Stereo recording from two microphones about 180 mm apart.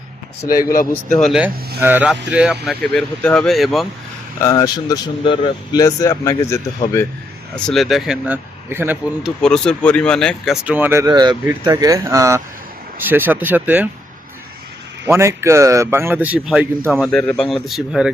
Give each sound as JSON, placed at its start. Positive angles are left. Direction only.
{"t": 1.1, "sound": "speech", "side_deg": 0}
{"t": 1.8, "sound": "a man's voice", "side_deg": -10}
{"t": 4.4, "sound": "speech", "side_deg": 20}
{"t": 7.5, "sound": "speech", "side_deg": 0}
{"t": 9.4, "sound": "a man's voice", "side_deg": 5}
{"t": 15.0, "sound": "a man's voice", "side_deg": -15}